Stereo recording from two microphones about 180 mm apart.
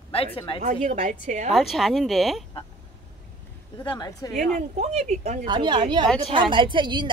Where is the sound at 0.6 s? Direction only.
40° right (ahead or behind).